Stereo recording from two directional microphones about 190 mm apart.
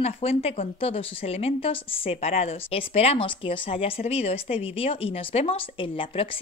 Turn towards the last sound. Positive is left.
turn(degrees=30)  # may be behind; listen again after turning